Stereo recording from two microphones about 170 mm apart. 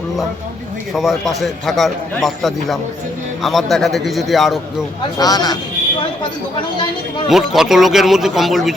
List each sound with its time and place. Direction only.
0.9 s a man's voice: centre (ahead or behind)
5.1 s speech: 25° left (ahead or behind)
7.3 s a man's voice: centre (ahead or behind)